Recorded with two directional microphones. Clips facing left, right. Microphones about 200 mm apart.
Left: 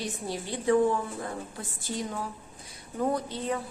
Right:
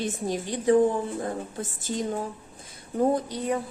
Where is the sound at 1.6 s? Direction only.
20° right (ahead or behind).